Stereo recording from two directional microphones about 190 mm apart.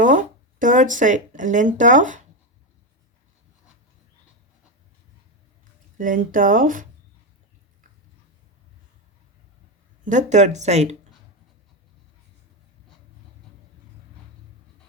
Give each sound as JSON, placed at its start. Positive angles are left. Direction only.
{"t": 0.0, "sound": "speech", "side_deg": -40}
{"t": 6.0, "sound": "speech", "side_deg": -45}
{"t": 10.0, "sound": "speech", "side_deg": -40}